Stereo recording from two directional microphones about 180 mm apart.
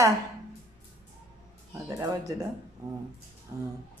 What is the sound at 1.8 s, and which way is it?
Speech, 20° right (ahead or behind).